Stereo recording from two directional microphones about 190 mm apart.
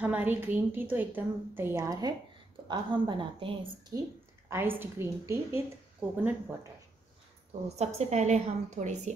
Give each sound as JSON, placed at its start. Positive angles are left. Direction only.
{"t": 0.0, "sound": "a woman's voice", "side_deg": -10}
{"t": 4.5, "sound": "a woman's voice", "side_deg": -10}
{"t": 7.6, "sound": "a woman's voice", "side_deg": -35}